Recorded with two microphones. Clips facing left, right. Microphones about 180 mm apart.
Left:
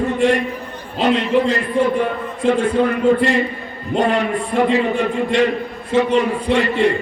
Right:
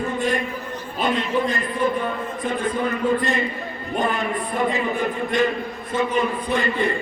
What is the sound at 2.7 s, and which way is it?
A man's voice, 70° left (ahead or behind).